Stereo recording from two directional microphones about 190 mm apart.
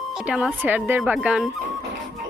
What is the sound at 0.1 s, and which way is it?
Speech, 5° right (ahead or behind).